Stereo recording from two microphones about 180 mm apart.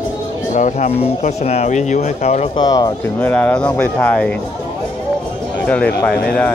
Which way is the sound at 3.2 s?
5° left (ahead or behind).